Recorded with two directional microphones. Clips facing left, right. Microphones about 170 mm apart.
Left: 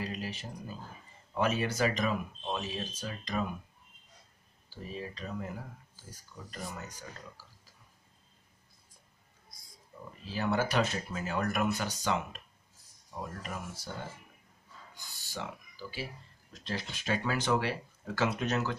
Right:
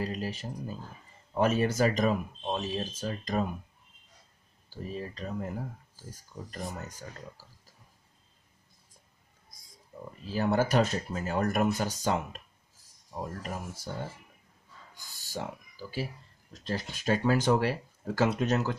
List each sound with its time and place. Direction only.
0.0 s speech: 40° right (ahead or behind)
4.6 s speech: 45° right (ahead or behind)
10.2 s speech: 45° right (ahead or behind)
15.2 s speech: 45° right (ahead or behind)